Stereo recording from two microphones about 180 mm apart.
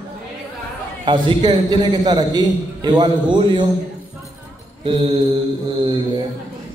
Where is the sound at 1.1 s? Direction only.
25° right (ahead or behind).